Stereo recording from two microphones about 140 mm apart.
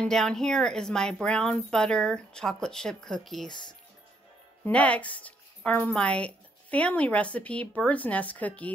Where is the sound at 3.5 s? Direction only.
30° left (ahead or behind).